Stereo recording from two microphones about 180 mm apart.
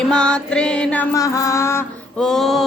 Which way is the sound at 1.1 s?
20° left (ahead or behind).